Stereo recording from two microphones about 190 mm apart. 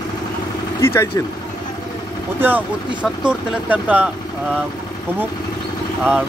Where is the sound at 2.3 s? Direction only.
10° right (ahead or behind).